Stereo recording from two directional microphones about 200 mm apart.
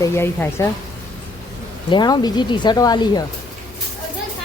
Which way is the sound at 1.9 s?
20° left (ahead or behind).